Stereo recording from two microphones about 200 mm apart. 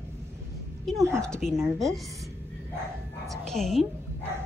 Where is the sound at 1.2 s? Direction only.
5° left (ahead or behind).